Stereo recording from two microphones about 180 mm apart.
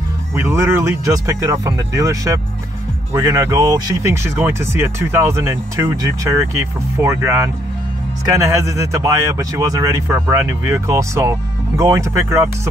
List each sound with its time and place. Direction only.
0.4 s speech: 15° right (ahead or behind)